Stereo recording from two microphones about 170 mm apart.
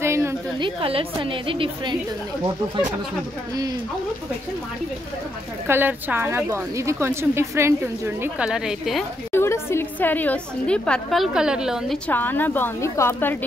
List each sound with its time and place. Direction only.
0.0 s a sound: 15° right (ahead or behind)
0.6 s a woman's voice: 30° right (ahead or behind)
5.7 s a woman's voice: 10° right (ahead or behind)
8.5 s a woman's voice: 5° right (ahead or behind)
9.3 s a woman's voice: 15° left (ahead or behind); by 12.0 s 5° right (ahead or behind)
12.1 s a woman's voice: 10° left (ahead or behind)